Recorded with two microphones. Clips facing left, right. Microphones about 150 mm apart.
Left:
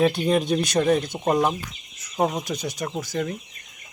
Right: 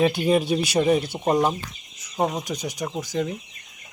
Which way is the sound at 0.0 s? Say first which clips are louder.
Right 1 dB; centre (ahead or behind).